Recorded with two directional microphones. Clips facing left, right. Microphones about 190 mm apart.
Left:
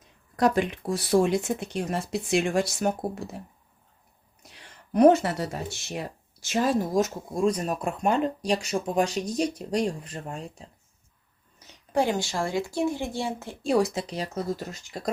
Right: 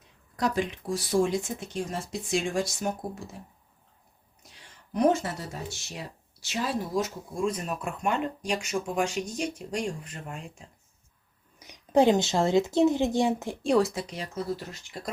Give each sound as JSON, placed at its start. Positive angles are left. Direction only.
{"t": 0.3, "sound": "speech", "side_deg": 60}
{"t": 4.5, "sound": "speech", "side_deg": 65}
{"t": 11.6, "sound": "speech", "side_deg": -15}
{"t": 13.9, "sound": "speech", "side_deg": 35}